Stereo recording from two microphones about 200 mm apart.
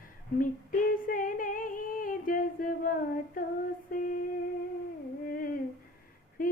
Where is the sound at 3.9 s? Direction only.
45° left (ahead or behind).